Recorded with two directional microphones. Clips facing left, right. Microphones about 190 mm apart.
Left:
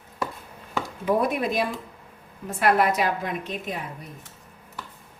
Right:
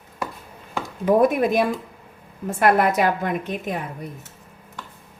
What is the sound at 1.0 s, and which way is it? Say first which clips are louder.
A woman's voice: right 6 dB; 50° right (ahead or behind).